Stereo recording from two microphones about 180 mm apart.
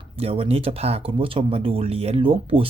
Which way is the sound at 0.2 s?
35° right (ahead or behind).